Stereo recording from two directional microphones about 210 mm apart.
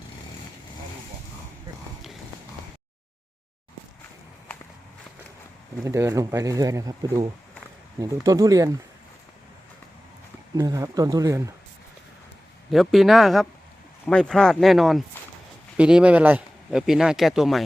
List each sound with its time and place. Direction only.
5.8 s speech: 15° right (ahead or behind)
10.6 s speech: 15° right (ahead or behind)
12.7 s speech: centre (ahead or behind)